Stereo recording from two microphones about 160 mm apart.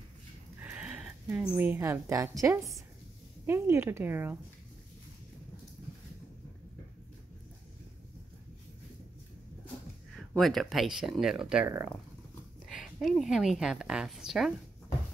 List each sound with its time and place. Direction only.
0.6 s a sound: 10° right (ahead or behind)
2.4 s a woman's voice: 20° right (ahead or behind)
10.1 s a woman's voice: centre (ahead or behind)